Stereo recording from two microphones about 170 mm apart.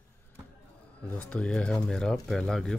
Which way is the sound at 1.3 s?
5° left (ahead or behind).